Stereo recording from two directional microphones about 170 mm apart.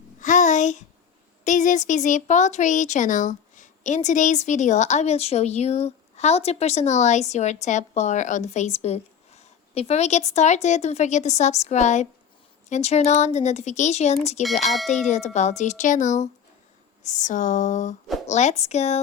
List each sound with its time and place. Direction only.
0.2 s a sound: 45° left (ahead or behind)
1.5 s speech: 45° left (ahead or behind)
14.6 s speech: centre (ahead or behind)
15.0 s speech: 45° left (ahead or behind)